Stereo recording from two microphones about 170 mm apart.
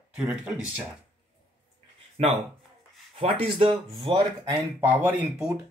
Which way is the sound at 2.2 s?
40° right (ahead or behind).